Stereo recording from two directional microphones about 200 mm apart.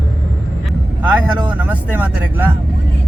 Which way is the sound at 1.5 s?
10° right (ahead or behind).